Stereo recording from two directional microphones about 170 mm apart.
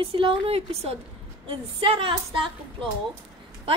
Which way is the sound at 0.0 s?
30° right (ahead or behind).